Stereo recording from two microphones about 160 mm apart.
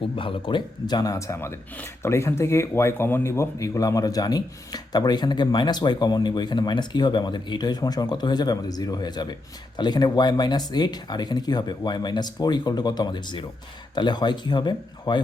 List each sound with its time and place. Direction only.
0.2 s speech: 35° left (ahead or behind)